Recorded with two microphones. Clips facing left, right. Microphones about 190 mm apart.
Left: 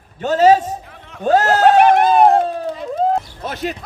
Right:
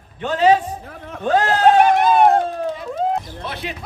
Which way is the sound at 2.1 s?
35° left (ahead or behind).